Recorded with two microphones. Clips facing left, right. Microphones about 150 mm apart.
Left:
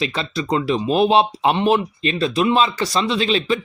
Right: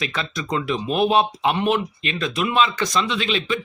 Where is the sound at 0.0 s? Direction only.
30° left (ahead or behind).